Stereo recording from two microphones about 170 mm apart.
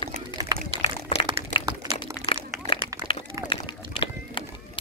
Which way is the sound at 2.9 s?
20° right (ahead or behind).